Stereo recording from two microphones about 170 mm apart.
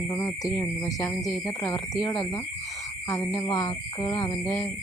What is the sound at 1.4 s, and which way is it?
Speech, 20° left (ahead or behind).